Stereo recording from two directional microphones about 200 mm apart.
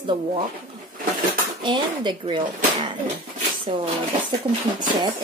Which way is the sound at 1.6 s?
25° right (ahead or behind).